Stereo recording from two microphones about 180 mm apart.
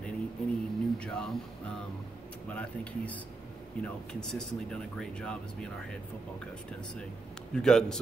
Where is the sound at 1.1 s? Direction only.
5° left (ahead or behind).